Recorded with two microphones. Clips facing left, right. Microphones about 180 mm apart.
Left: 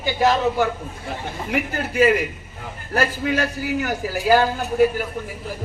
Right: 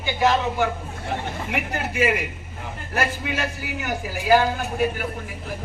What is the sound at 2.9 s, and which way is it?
A man's voice, 40° left (ahead or behind).